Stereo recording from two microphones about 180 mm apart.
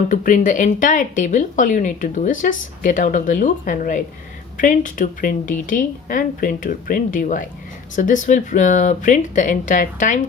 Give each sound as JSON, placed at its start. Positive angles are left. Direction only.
{"t": 0.1, "sound": "speech", "side_deg": 45}